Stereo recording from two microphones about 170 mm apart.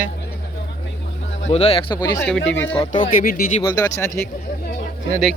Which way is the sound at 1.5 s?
35° left (ahead or behind).